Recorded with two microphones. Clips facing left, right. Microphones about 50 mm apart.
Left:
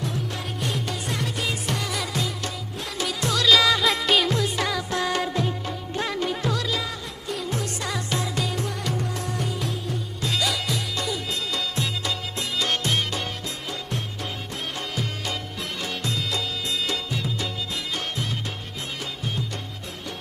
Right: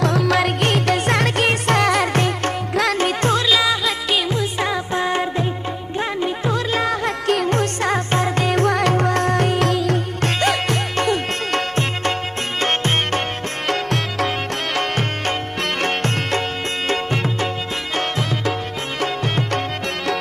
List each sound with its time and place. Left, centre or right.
0.0 s music: right
2.7 s music: right
3.0 s music: right
3.4 s music: centre
4.3 s music: right
6.7 s music: right
7.2 s music: right
8.5 s music: right
10.4 s music: right
13.7 s music: right
18.9 s music: right